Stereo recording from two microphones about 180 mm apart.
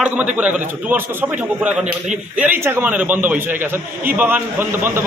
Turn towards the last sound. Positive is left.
turn(degrees=-10)  # may be behind; listen again after turning